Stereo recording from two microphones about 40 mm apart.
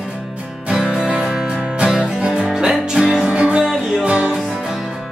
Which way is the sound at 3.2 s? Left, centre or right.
Right.